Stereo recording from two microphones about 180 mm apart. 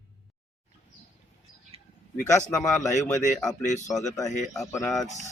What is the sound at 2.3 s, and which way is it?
Speech, 15° left (ahead or behind).